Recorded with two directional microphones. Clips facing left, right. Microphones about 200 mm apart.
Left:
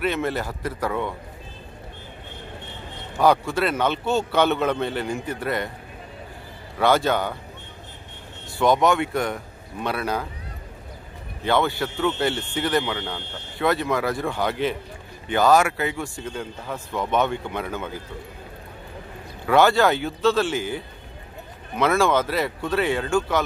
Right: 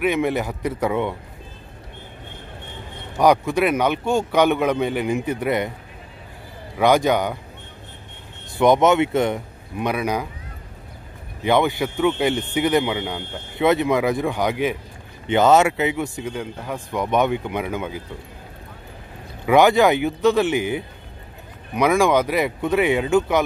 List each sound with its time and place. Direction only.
0.0 s speech: 15° right (ahead or behind)
3.2 s speech: 15° right (ahead or behind)
6.8 s speech: 15° right (ahead or behind)
8.5 s speech: 20° right (ahead or behind)
11.4 s speech: 15° right (ahead or behind)
19.4 s speech: 15° right (ahead or behind)